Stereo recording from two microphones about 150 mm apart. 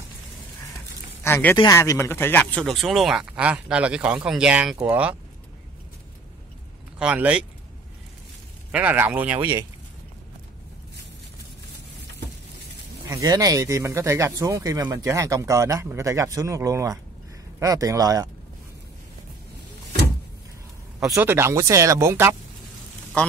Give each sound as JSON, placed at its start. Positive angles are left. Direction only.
{"t": 1.2, "sound": "a man's voice", "side_deg": 15}
{"t": 7.0, "sound": "speech", "side_deg": -10}
{"t": 8.7, "sound": "speech", "side_deg": -10}
{"t": 13.1, "sound": "speech", "side_deg": -25}
{"t": 21.1, "sound": "speech", "side_deg": -15}